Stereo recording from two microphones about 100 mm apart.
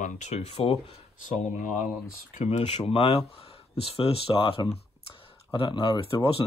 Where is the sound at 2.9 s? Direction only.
75° left (ahead or behind).